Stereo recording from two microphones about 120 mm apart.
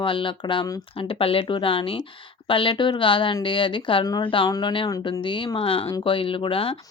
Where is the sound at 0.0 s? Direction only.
45° left (ahead or behind).